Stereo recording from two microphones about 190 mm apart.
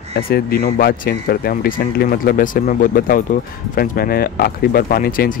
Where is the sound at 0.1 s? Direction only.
55° left (ahead or behind).